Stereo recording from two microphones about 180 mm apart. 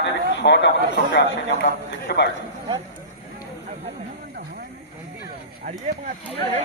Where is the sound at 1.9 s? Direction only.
70° left (ahead or behind).